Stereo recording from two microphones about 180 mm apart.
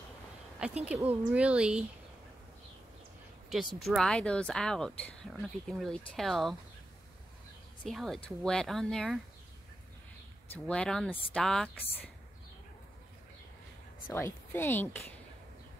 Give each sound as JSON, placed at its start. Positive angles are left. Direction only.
{"t": 0.6, "sound": "speech", "side_deg": -5}
{"t": 3.4, "sound": "speech", "side_deg": 0}
{"t": 7.8, "sound": "speech", "side_deg": 0}
{"t": 10.5, "sound": "speech", "side_deg": 5}
{"t": 14.1, "sound": "speech", "side_deg": 15}